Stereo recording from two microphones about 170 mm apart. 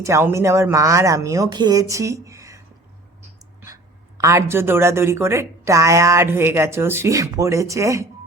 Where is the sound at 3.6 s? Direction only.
20° right (ahead or behind).